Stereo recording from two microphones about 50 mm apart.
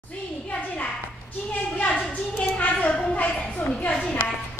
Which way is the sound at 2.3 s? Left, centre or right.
Left.